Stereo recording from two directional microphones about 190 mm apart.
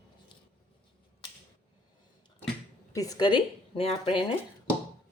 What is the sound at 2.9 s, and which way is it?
Speech, 20° left (ahead or behind).